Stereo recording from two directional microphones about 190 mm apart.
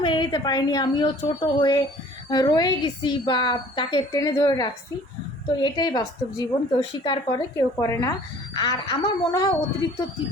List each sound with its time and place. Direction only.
0.0 s a woman's voice: 25° left (ahead or behind)